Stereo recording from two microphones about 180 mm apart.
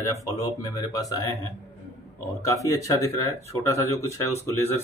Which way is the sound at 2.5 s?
20° left (ahead or behind).